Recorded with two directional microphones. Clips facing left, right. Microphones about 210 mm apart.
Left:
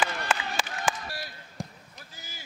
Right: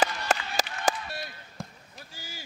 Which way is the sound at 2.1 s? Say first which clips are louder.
Right 5 dB; 30° right (ahead or behind).